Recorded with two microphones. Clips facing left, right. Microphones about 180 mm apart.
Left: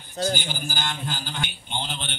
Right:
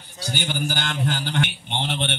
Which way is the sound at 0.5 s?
70° right (ahead or behind).